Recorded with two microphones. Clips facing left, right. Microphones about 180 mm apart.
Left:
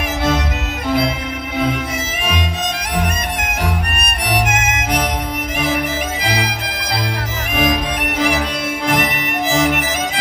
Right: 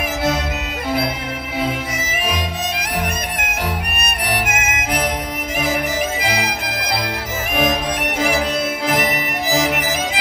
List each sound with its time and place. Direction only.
4.3 s violin: 55° right (ahead or behind)